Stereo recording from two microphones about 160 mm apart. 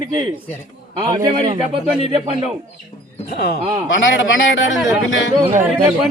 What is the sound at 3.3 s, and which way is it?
Speech, 80° left.